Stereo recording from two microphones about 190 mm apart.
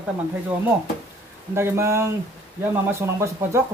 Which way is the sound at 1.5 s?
15° right (ahead or behind).